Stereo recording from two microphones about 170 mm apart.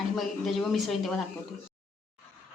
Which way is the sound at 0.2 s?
Centre (ahead or behind).